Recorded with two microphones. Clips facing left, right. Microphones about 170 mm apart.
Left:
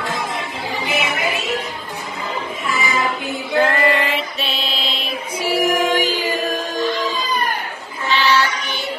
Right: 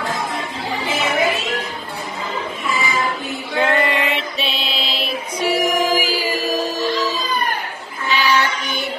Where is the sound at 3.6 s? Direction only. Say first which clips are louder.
Right 1 dB; centre (ahead or behind).